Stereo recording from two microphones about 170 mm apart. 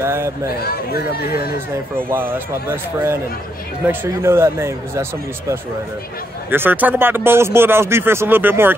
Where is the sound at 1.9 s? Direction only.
10° right (ahead or behind).